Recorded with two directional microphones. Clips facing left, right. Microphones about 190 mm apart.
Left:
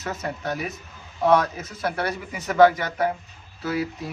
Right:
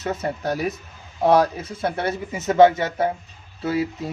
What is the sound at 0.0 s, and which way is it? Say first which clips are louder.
Speech: right 4 dB; 30° right (ahead or behind).